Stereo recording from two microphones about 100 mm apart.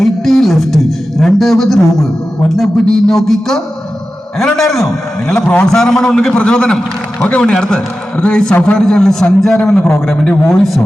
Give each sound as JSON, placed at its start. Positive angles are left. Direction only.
{"t": 0.0, "sound": "a sound", "side_deg": 0}
{"t": 2.6, "sound": "speech", "side_deg": 5}
{"t": 5.4, "sound": "a man's voice", "side_deg": 15}
{"t": 9.8, "sound": "a man's voice", "side_deg": 20}
{"t": 10.2, "sound": "speech", "side_deg": 5}